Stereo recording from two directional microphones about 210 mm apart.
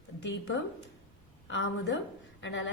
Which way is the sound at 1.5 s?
60° left (ahead or behind).